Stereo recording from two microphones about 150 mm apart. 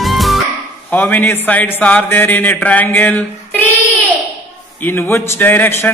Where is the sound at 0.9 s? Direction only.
10° left (ahead or behind).